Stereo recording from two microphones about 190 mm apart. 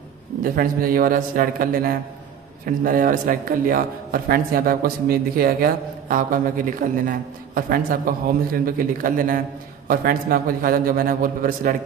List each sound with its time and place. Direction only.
0.4 s a man's voice: 50° right (ahead or behind)